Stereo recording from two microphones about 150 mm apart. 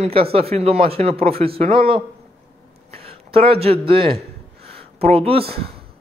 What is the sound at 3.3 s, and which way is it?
Speech, 40° right (ahead or behind).